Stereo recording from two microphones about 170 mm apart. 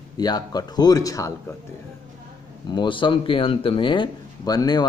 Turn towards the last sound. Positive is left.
turn(degrees=25)  # may be behind; listen again after turning